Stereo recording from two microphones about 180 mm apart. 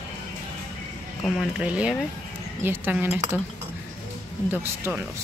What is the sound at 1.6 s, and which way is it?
Speech, 5° right (ahead or behind).